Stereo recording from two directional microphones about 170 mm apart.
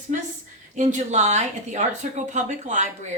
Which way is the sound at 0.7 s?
45° right (ahead or behind).